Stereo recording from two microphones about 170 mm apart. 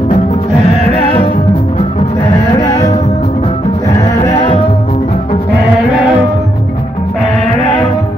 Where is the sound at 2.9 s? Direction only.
40° left (ahead or behind).